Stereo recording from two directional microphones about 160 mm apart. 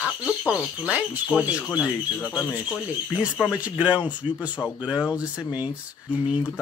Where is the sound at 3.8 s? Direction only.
10° right (ahead or behind).